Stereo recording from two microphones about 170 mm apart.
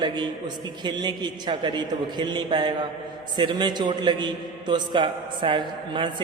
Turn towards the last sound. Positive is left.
turn(degrees=-30)  # may be behind; listen again after turning